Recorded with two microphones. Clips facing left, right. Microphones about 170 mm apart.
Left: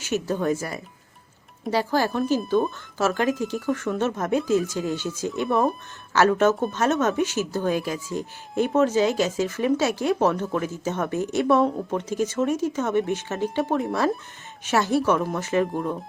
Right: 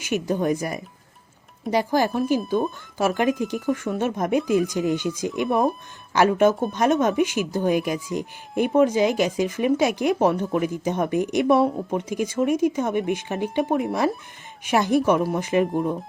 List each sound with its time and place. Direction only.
0.0 s speech: 15° right (ahead or behind)
15.7 s speech: centre (ahead or behind)